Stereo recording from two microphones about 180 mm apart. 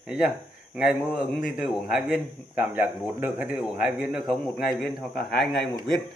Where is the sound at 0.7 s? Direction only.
5° right (ahead or behind).